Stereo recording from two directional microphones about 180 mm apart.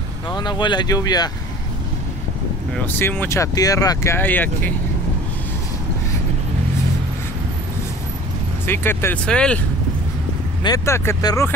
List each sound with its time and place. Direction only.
0.3 s speech: 25° left (ahead or behind)
2.7 s speech: 10° left (ahead or behind)
8.6 s speech: 15° left (ahead or behind)
10.6 s speech: 15° left (ahead or behind)